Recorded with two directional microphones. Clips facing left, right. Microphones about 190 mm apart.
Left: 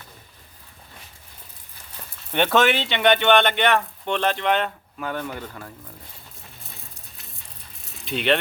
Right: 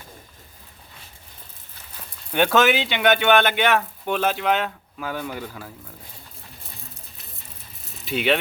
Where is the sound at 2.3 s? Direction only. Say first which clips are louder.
Right 1 dB; 5° right (ahead or behind).